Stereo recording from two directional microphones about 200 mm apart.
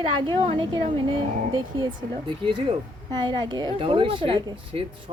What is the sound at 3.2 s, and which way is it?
A woman's voice, 20° right (ahead or behind).